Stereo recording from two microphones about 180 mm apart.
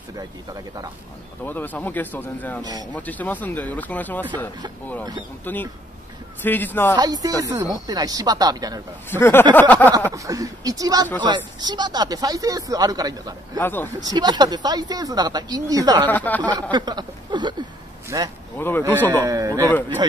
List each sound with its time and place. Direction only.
1.4 s speech: 10° left (ahead or behind)
2.6 s speech: 20° right (ahead or behind)
2.9 s speech: 10° left (ahead or behind)
5.4 s speech: 10° left (ahead or behind)
7.0 s speech: 20° right (ahead or behind)
9.2 s speech: 10° left (ahead or behind)
10.1 s speech: 20° right (ahead or behind)
13.6 s speech: 10° left (ahead or behind)
14.0 s speech: 25° right (ahead or behind)
16.1 s speech: 10° left (ahead or behind)
16.7 s speech: 25° right (ahead or behind)
18.6 s speech: 10° left (ahead or behind)
19.0 s a man's voice: 20° right (ahead or behind)